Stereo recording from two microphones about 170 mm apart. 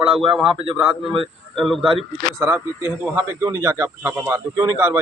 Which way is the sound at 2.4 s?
10° right (ahead or behind).